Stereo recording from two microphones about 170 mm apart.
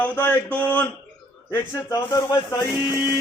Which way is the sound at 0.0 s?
10° left (ahead or behind).